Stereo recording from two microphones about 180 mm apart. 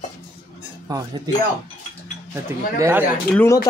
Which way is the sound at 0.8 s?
20° right (ahead or behind).